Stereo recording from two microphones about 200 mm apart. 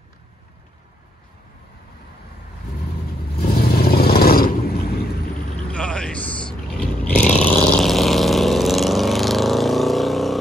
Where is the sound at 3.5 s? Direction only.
50° left (ahead or behind).